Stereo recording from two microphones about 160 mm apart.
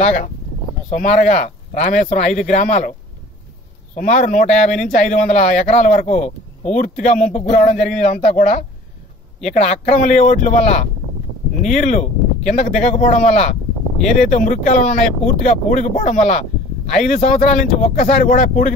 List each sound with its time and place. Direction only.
0.8 s speech: 50° left (ahead or behind)
3.9 s speech: 55° left (ahead or behind)